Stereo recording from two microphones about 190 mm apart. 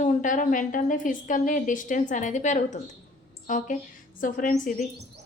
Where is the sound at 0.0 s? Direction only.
40° left (ahead or behind).